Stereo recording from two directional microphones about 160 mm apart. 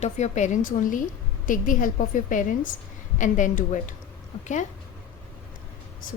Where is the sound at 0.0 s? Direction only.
45° left (ahead or behind).